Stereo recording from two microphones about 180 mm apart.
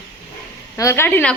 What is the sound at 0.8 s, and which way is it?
Speech, 15° left (ahead or behind).